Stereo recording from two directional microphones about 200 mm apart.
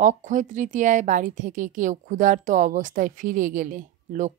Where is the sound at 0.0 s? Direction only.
40° right (ahead or behind).